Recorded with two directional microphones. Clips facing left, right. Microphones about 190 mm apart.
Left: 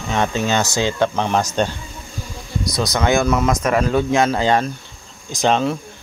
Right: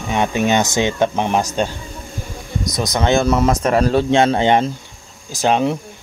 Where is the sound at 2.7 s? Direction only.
20° right (ahead or behind).